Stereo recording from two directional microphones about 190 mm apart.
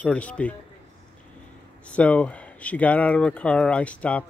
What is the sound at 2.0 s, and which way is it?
Speech, 5° left (ahead or behind).